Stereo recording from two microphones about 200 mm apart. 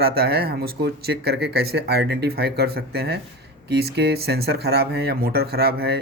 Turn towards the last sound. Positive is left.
turn(degrees=-50)  # may be behind; listen again after turning